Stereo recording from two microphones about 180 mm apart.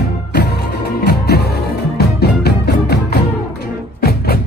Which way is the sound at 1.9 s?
65° left (ahead or behind).